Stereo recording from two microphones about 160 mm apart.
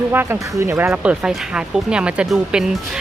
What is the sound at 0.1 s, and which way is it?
Speech, 15° right (ahead or behind).